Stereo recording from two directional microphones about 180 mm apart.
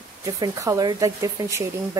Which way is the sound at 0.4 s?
20° right (ahead or behind).